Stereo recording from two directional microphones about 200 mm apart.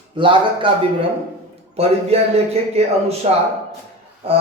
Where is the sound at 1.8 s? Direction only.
30° right (ahead or behind).